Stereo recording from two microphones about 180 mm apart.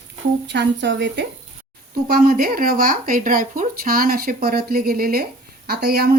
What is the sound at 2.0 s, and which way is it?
Speech, 55° right (ahead or behind).